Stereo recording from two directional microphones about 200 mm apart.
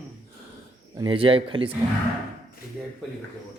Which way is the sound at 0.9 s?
25° right (ahead or behind).